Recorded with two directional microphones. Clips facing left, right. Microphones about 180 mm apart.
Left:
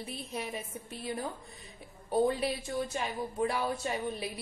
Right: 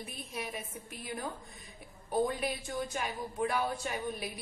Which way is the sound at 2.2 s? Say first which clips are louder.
Left 4 dB; 25° left (ahead or behind).